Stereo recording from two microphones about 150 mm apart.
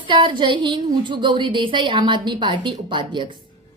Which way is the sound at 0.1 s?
35° right (ahead or behind).